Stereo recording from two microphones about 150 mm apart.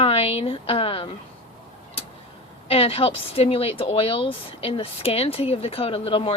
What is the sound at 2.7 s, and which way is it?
A woman's voice, 40° left (ahead or behind).